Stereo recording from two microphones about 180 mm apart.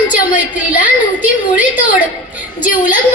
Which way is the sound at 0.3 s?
50° left (ahead or behind).